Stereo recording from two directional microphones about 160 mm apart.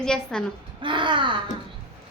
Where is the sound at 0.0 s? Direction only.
5° left (ahead or behind).